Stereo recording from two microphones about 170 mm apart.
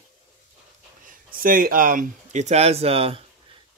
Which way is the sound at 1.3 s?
55° right (ahead or behind).